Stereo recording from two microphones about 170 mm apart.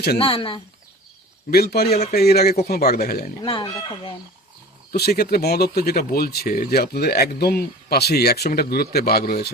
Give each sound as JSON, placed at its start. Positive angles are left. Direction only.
{"t": 0.2, "sound": "speech", "side_deg": 35}
{"t": 1.5, "sound": "a man's voice", "side_deg": 65}
{"t": 3.4, "sound": "speech", "side_deg": 30}
{"t": 4.9, "sound": "speech", "side_deg": 65}